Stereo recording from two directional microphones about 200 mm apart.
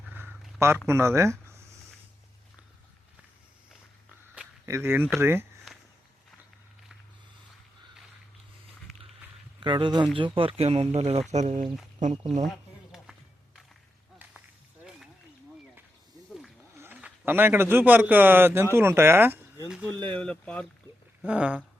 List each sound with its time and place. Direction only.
0.1 s a sound: 10° right (ahead or behind)
0.9 s speech: 15° right (ahead or behind)
4.6 s speech: 15° right (ahead or behind)
9.6 s speech: 25° right (ahead or behind)
12.4 s a sound: centre (ahead or behind)
16.7 s a man's voice: 10° right (ahead or behind)
21.2 s speech: 5° right (ahead or behind)